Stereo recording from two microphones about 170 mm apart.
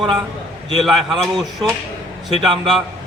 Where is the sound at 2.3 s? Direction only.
30° right (ahead or behind).